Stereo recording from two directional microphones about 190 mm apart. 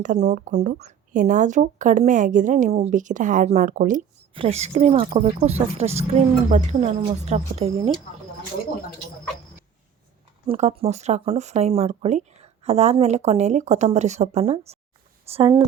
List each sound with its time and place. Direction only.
0.0 s speech: 40° right (ahead or behind)
10.5 s speech: 30° right (ahead or behind)